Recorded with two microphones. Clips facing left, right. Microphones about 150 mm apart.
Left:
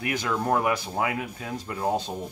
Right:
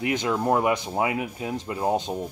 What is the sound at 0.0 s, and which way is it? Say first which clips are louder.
Speech: right 3 dB; 20° right (ahead or behind).